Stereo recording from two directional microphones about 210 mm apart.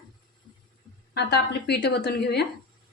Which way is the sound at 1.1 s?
50° left (ahead or behind).